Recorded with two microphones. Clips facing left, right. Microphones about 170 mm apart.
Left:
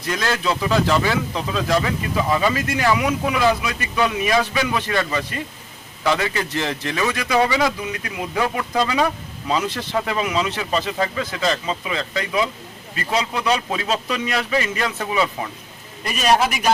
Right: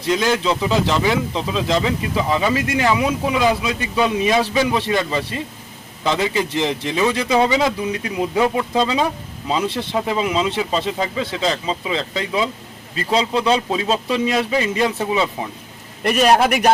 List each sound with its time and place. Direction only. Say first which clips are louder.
0.1 s speech: right 4 dB; 20° right (ahead or behind)
16.0 s a man's voice: right 4 dB; 60° right (ahead or behind)